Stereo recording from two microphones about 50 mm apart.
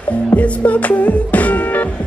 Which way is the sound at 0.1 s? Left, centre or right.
Left.